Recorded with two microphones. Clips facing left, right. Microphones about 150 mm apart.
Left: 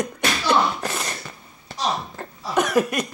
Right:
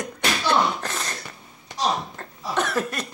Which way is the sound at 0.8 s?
10° left (ahead or behind).